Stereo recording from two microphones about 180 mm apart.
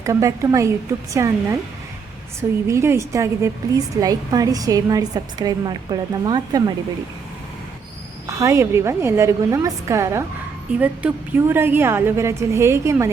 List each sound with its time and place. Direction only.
0.0 s a woman's voice: 15° right (ahead or behind)
2.6 s a woman's voice: 15° right (ahead or behind)
8.3 s a woman's voice: 15° right (ahead or behind)